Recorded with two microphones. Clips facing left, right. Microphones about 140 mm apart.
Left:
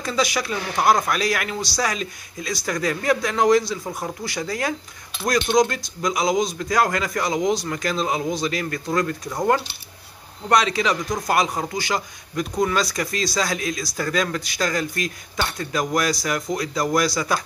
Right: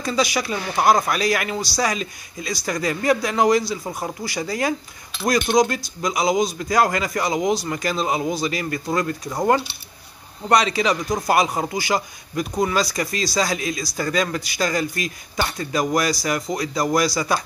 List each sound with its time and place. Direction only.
0.0 s speech: centre (ahead or behind)